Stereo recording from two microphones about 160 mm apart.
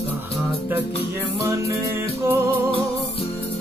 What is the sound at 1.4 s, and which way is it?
Music, 15° right (ahead or behind).